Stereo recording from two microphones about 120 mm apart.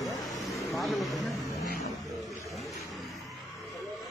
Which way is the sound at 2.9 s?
Centre (ahead or behind).